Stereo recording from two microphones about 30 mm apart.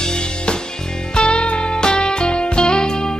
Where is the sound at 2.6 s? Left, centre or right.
Left.